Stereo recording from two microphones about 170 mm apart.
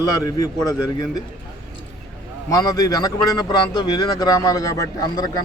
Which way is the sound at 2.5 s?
20° left (ahead or behind).